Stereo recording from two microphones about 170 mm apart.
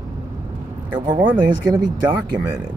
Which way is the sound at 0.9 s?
25° right (ahead or behind).